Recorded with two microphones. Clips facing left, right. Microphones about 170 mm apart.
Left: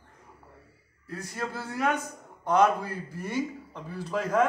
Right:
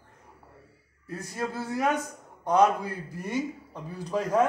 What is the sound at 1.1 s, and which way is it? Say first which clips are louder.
Speech: right 2 dB; 20° right (ahead or behind).